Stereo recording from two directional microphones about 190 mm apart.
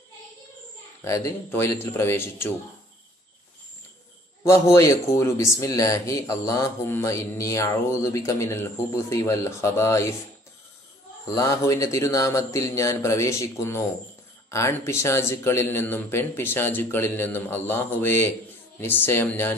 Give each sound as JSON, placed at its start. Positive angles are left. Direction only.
{"t": 1.0, "sound": "speech", "side_deg": 15}
{"t": 4.7, "sound": "speech", "side_deg": 15}
{"t": 11.2, "sound": "speech", "side_deg": 15}